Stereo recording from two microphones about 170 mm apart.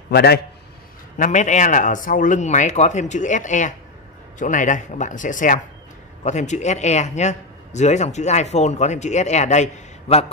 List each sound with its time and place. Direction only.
0.1 s a man's voice: 70° left (ahead or behind)
1.1 s a man's voice: 45° left (ahead or behind)